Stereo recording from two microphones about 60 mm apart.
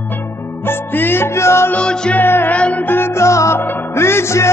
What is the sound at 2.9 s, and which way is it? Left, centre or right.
Music, left.